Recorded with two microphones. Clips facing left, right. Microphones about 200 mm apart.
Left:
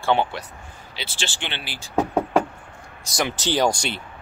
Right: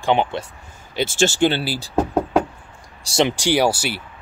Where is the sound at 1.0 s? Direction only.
45° right (ahead or behind).